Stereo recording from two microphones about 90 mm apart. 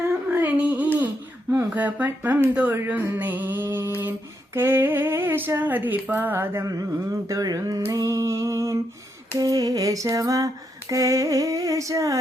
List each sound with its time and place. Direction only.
0.3 s music: 20° right (ahead or behind)
1.5 s speech: 15° right (ahead or behind)
2.7 s a sound: 20° right (ahead or behind)
6.7 s lullaby: 40° right (ahead or behind)